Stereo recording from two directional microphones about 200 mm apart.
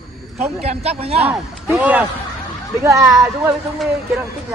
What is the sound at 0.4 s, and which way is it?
Speech, 30° right (ahead or behind).